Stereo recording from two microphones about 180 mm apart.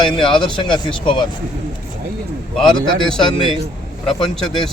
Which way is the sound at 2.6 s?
25° left (ahead or behind).